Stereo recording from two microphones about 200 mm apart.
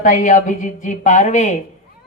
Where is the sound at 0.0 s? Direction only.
40° left (ahead or behind).